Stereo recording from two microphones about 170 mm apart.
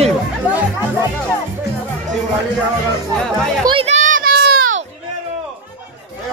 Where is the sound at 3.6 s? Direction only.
35° right (ahead or behind).